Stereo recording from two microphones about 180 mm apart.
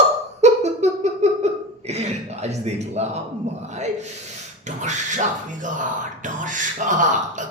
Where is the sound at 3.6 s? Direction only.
40° right (ahead or behind).